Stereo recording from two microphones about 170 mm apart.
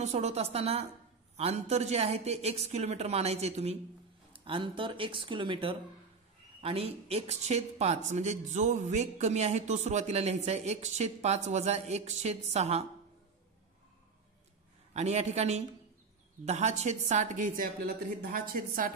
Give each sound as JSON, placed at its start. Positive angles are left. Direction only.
{"t": 0.0, "sound": "speech", "side_deg": -40}
{"t": 15.0, "sound": "a woman's voice", "side_deg": -40}